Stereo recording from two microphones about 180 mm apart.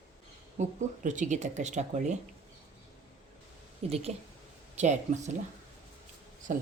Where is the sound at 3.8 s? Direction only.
35° right (ahead or behind).